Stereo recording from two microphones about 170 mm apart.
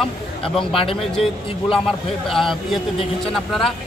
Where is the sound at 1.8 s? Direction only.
Centre (ahead or behind).